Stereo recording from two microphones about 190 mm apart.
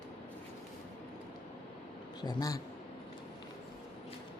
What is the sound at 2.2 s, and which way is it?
Speech, 20° left (ahead or behind).